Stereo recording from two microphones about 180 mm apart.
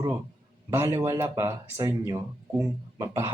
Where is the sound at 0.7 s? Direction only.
15° right (ahead or behind).